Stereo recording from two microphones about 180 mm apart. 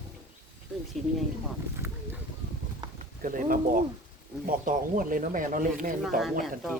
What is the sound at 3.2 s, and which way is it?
Speech, 50° right (ahead or behind).